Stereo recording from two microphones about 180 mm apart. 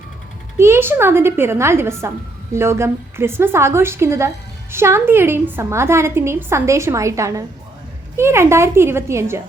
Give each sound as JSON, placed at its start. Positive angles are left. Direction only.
{"t": 0.5, "sound": "a woman's voice", "side_deg": -15}